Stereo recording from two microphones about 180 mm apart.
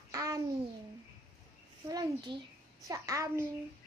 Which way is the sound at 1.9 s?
25° right (ahead or behind).